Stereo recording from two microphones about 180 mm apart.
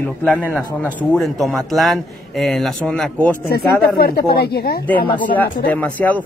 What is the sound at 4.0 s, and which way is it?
Speech, 55° left (ahead or behind).